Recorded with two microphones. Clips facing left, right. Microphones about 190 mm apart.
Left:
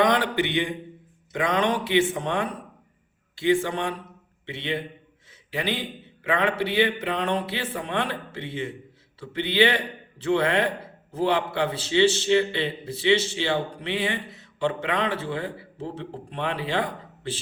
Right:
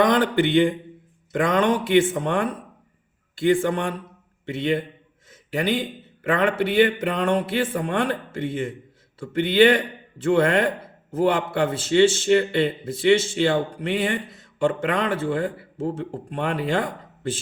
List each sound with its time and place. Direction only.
0.0 s speech: 50° right (ahead or behind)
5.3 s a sound: 45° right (ahead or behind)
6.2 s speech: 50° right (ahead or behind)